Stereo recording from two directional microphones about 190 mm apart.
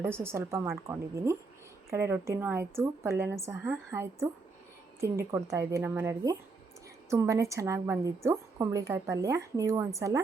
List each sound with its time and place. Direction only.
0.0 s a woman's voice: 10° right (ahead or behind)